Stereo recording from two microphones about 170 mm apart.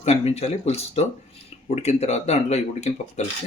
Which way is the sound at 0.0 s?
40° left (ahead or behind).